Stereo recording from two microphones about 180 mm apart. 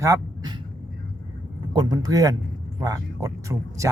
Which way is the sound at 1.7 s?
25° right (ahead or behind).